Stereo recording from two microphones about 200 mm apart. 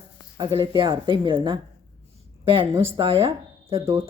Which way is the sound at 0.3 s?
25° right (ahead or behind).